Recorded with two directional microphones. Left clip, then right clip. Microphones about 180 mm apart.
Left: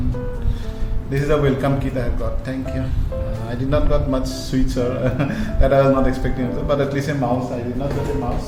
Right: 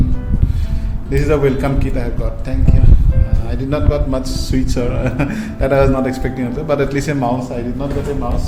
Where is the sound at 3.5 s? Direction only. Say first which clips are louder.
Right 1 dB; 20° right (ahead or behind).